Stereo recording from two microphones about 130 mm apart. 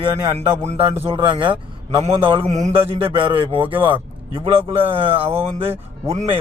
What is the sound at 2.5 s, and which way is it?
A man's voice, 60° right (ahead or behind).